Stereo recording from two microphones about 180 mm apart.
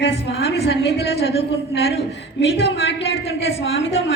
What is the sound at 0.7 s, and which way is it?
Speech, 65° left (ahead or behind).